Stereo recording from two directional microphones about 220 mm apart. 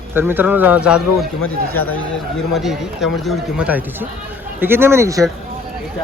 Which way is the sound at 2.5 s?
Centre (ahead or behind).